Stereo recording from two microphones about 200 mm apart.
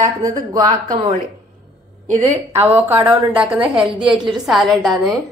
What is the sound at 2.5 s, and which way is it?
A woman's voice, 10° right (ahead or behind).